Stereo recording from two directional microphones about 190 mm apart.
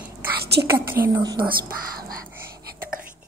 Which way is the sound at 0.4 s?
60° right (ahead or behind).